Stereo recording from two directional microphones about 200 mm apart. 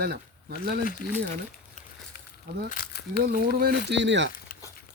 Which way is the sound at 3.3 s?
50° right (ahead or behind).